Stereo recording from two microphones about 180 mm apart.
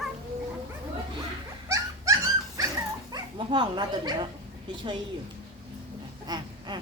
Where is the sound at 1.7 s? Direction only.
20° right (ahead or behind).